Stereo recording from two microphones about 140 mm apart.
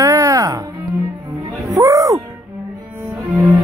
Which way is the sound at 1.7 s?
25° right (ahead or behind).